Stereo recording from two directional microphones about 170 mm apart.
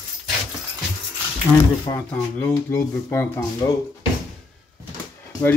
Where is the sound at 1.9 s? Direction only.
15° left (ahead or behind).